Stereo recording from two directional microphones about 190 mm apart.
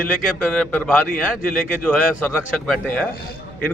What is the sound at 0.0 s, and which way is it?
A man's voice, 5° left (ahead or behind).